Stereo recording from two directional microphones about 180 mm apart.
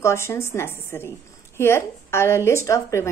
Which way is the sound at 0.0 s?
15° left (ahead or behind).